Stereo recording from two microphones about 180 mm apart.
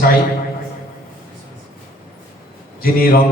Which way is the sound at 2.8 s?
55° left (ahead or behind).